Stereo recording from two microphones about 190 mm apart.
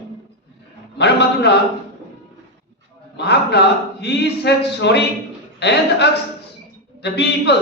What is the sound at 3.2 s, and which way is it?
A man's voice, 60° left (ahead or behind).